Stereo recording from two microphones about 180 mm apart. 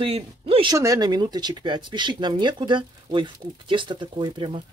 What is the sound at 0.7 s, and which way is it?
Speech, 20° right (ahead or behind).